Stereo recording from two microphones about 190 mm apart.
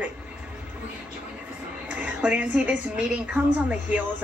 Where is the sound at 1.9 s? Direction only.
5° right (ahead or behind).